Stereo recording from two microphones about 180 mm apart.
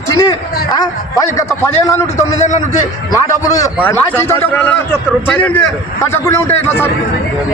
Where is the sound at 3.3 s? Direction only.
20° left (ahead or behind).